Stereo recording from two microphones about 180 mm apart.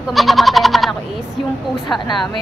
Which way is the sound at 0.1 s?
Centre (ahead or behind).